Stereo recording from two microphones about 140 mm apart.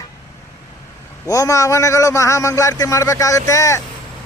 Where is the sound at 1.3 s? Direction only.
25° left (ahead or behind).